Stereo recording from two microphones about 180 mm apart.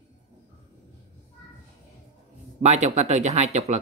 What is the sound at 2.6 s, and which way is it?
Speech, 40° right (ahead or behind).